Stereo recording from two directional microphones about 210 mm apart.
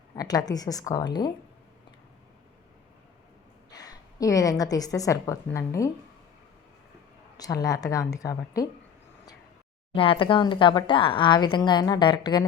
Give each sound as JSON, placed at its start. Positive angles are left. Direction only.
{"t": 0.2, "sound": "a woman's voice", "side_deg": 15}
{"t": 3.7, "sound": "a woman's voice", "side_deg": 20}
{"t": 7.3, "sound": "a woman's voice", "side_deg": 15}
{"t": 9.9, "sound": "speech", "side_deg": 25}